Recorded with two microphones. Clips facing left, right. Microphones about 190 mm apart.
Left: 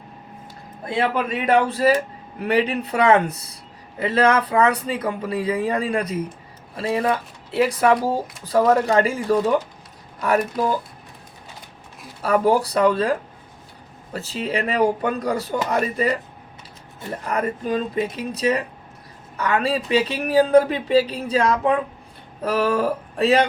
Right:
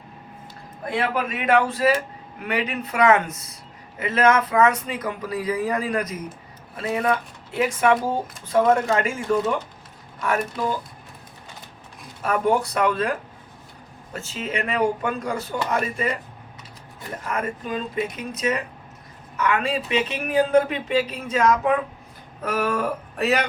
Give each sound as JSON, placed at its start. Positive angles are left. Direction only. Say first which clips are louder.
{"t": 0.9, "sound": "speech", "louder": "left 3 dB", "side_deg": 30}
{"t": 12.2, "sound": "speech", "louder": "left 3 dB", "side_deg": 35}
{"t": 17.2, "sound": "speech", "louder": "left 4 dB", "side_deg": 35}